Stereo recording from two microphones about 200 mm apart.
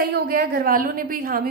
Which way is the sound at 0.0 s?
50° right (ahead or behind).